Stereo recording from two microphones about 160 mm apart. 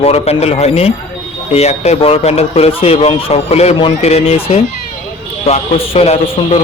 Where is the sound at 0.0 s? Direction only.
40° left (ahead or behind).